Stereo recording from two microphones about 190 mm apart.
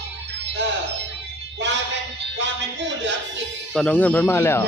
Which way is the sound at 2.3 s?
70° right (ahead or behind).